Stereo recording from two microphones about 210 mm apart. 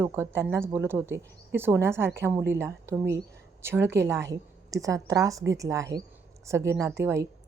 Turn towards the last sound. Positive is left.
turn(degrees=-15)  # may be behind; listen again after turning